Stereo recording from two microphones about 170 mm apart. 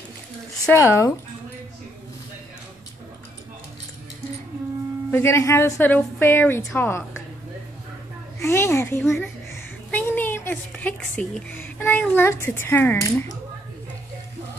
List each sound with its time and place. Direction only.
0.7 s a woman's voice: 15° left (ahead or behind)
5.1 s a woman's voice: 15° left (ahead or behind)
8.4 s a woman's voice: 15° left (ahead or behind)
9.0 s a woman's voice: centre (ahead or behind)
9.5 s a woman's voice: 10° left (ahead or behind)